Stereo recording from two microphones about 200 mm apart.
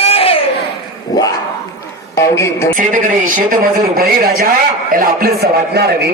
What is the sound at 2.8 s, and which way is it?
A man's voice, 40° right (ahead or behind).